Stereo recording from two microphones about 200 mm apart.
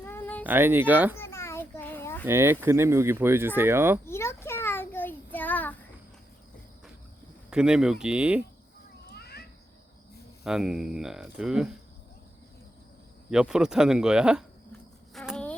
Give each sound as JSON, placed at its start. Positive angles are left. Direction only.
{"t": 0.0, "sound": "a sound", "side_deg": 10}
{"t": 0.4, "sound": "speech", "side_deg": -10}
{"t": 1.1, "sound": "a sound", "side_deg": 15}
{"t": 2.2, "sound": "speech", "side_deg": -10}
{"t": 4.0, "sound": "child singing", "side_deg": 15}
{"t": 7.5, "sound": "speech", "side_deg": -5}
{"t": 9.0, "sound": "children playing", "side_deg": 55}
{"t": 10.4, "sound": "speech", "side_deg": -5}
{"t": 13.3, "sound": "speech", "side_deg": -5}
{"t": 15.1, "sound": "insect", "side_deg": 5}